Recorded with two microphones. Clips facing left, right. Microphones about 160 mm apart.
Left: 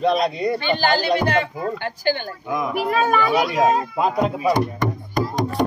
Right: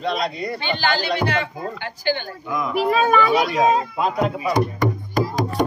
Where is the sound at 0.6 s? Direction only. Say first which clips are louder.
Even; 45° left (ahead or behind).